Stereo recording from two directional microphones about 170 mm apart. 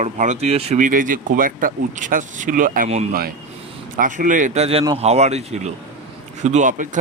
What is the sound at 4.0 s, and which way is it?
Speech, 50° right (ahead or behind).